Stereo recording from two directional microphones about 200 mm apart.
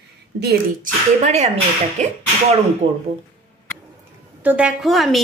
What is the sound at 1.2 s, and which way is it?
Speech, 35° right (ahead or behind).